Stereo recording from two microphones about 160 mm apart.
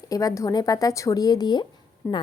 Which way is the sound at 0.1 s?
20° left (ahead or behind).